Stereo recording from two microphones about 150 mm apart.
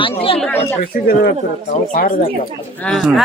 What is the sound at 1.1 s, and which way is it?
Speech, 75° left (ahead or behind).